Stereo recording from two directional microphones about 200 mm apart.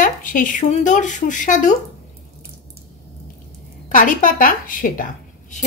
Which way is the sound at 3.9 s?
40° left (ahead or behind).